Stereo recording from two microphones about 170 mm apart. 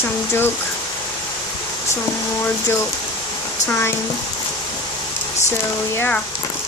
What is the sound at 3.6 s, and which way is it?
Speech, 15° left (ahead or behind).